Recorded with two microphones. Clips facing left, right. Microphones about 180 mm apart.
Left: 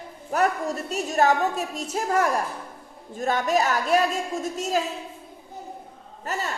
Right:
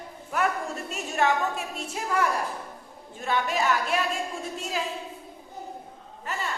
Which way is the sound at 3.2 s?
40° left (ahead or behind).